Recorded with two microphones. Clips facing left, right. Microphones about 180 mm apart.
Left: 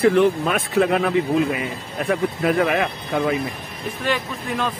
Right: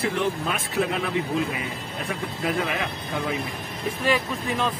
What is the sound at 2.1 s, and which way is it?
Speech, 60° left (ahead or behind).